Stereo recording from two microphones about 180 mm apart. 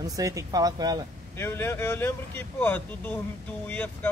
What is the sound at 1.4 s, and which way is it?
Speech, 15° left (ahead or behind).